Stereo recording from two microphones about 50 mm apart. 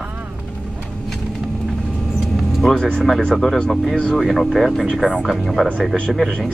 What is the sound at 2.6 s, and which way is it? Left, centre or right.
Speech, centre.